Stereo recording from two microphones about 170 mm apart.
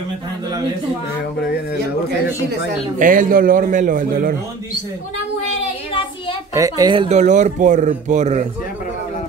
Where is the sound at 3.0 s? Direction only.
50° right (ahead or behind).